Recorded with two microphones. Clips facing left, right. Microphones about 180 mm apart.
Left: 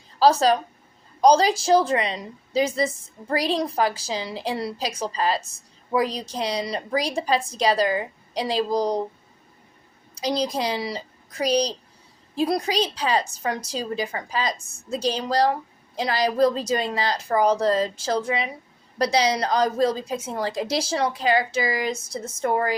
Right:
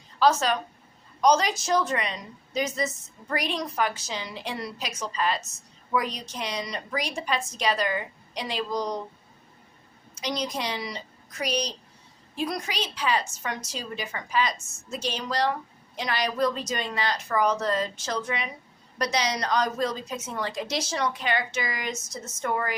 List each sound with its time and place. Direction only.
0.2 s a woman's voice: 35° left (ahead or behind)
10.2 s a woman's voice: 30° left (ahead or behind)